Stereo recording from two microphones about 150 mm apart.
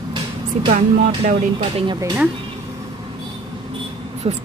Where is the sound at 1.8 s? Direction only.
30° right (ahead or behind).